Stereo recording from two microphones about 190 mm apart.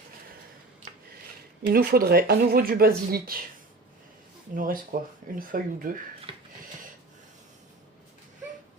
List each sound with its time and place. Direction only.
1.6 s speech: 50° right (ahead or behind)
4.5 s speech: 45° right (ahead or behind)